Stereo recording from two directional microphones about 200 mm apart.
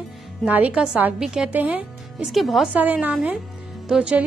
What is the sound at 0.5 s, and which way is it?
A woman's voice, 5° right (ahead or behind).